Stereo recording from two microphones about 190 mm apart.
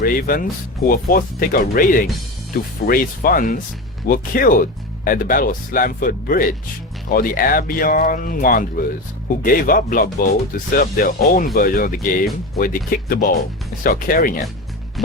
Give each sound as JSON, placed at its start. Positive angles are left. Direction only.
{"t": 0.0, "sound": "speech", "side_deg": 50}